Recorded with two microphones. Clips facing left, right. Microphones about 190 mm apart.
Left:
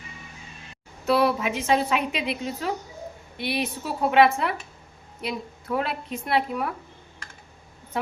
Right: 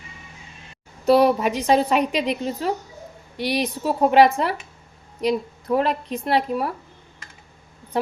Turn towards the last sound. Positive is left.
turn(degrees=-35)  # may be behind; listen again after turning